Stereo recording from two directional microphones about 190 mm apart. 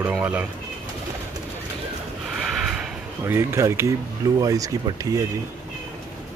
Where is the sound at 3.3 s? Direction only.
15° right (ahead or behind).